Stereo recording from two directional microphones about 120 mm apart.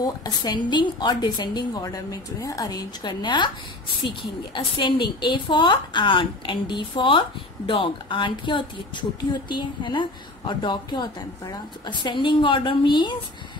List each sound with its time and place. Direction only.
0.0 s a woman's voice: 35° left (ahead or behind)